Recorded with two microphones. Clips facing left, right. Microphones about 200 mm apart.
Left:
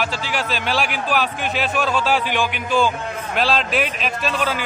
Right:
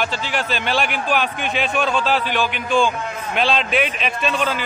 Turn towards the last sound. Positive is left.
turn(degrees=5)  # may be behind; listen again after turning